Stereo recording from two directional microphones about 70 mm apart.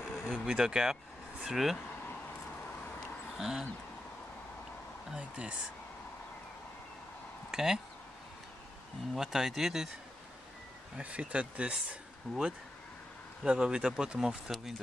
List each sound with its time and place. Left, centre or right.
0.3 s speech: centre
3.3 s speech: centre
5.1 s speech: centre
7.5 s speech: centre
9.1 s speech: centre
11.0 s speech: centre